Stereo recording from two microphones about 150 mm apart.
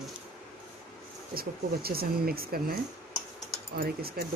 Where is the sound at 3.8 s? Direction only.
90° right.